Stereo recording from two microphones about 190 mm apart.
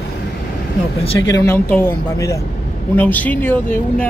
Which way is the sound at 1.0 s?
20° left (ahead or behind).